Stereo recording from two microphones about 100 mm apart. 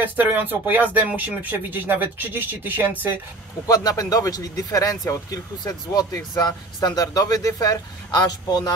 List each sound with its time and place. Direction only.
0.0 s speech: 15° right (ahead or behind)
3.6 s speech: 35° left (ahead or behind)